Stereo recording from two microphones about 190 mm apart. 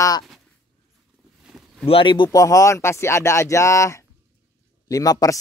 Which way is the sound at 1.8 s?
30° left (ahead or behind).